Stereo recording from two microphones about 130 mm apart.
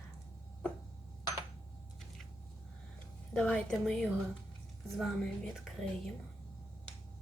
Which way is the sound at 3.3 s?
5° left (ahead or behind).